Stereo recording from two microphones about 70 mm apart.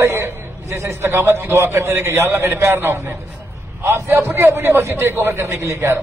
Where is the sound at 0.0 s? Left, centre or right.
Right.